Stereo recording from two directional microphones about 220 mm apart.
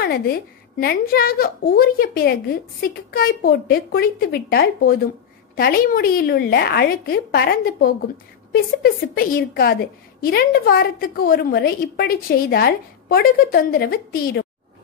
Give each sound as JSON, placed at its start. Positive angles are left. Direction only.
{"t": 0.0, "sound": "a woman's voice", "side_deg": 45}